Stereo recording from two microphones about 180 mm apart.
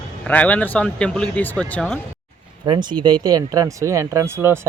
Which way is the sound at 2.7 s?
25° right (ahead or behind).